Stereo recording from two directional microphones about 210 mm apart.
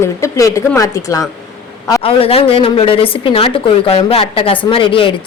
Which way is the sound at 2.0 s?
25° left (ahead or behind).